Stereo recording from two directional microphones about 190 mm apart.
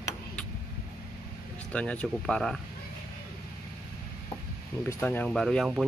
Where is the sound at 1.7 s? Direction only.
5° left (ahead or behind).